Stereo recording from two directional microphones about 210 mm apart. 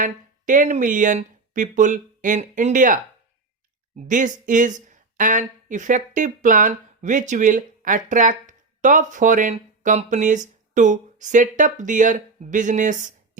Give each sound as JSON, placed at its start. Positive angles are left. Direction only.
{"t": 0.0, "sound": "speech", "side_deg": -40}
{"t": 4.0, "sound": "speech", "side_deg": -35}